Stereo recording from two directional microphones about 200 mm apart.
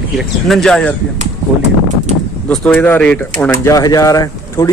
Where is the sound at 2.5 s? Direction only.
10° left (ahead or behind).